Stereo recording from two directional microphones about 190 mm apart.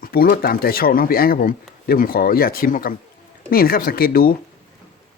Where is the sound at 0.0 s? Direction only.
50° left (ahead or behind).